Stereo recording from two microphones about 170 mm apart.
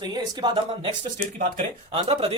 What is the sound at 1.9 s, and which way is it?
Speech, 35° right (ahead or behind).